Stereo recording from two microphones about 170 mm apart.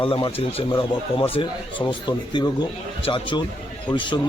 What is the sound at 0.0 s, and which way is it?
Speech, 30° left (ahead or behind).